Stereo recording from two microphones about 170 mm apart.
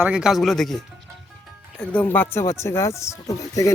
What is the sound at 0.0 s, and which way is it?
Speech, 5° right (ahead or behind).